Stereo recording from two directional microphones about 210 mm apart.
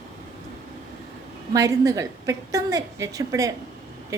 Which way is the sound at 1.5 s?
15° right (ahead or behind).